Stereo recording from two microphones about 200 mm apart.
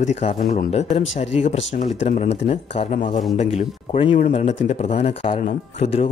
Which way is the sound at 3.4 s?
30° left (ahead or behind).